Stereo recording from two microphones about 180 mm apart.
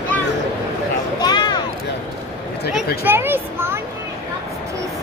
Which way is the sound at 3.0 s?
10° right (ahead or behind).